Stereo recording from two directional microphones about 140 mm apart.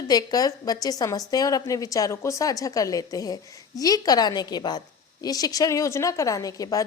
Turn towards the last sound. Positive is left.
turn(degrees=25)  # may be behind; listen again after turning